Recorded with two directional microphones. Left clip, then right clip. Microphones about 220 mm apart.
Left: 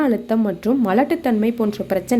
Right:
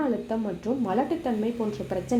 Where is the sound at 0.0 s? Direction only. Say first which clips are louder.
Left 8 dB; 40° left (ahead or behind).